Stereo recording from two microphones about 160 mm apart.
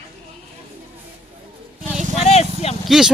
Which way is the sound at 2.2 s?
40° left (ahead or behind).